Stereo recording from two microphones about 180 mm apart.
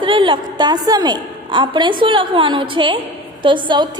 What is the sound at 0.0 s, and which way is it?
A woman's voice, 25° right (ahead or behind).